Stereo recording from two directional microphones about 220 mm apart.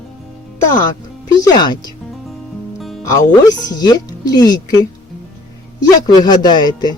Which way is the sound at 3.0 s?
15° left (ahead or behind).